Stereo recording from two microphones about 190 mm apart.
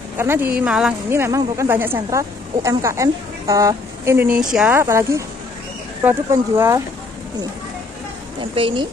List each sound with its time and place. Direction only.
0.2 s a woman's voice: 10° right (ahead or behind)
8.4 s a woman's voice: 25° right (ahead or behind)